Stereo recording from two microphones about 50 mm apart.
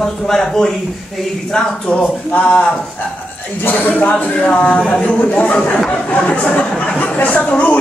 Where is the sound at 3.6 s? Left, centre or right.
Left.